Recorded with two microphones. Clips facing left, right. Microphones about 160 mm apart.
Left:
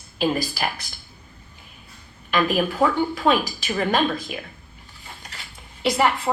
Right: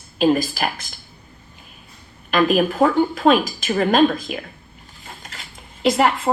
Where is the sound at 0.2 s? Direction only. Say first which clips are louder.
Right 6 dB; 45° right (ahead or behind).